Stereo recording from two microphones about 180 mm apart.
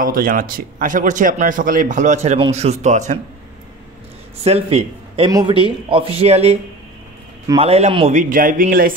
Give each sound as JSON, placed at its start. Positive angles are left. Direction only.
{"t": 0.0, "sound": "a man's voice", "side_deg": -50}
{"t": 4.4, "sound": "a man's voice", "side_deg": -35}